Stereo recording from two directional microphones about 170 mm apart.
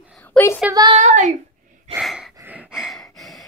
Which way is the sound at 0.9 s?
45° right (ahead or behind).